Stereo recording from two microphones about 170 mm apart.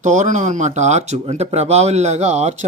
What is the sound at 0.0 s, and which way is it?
Speech, 45° right (ahead or behind).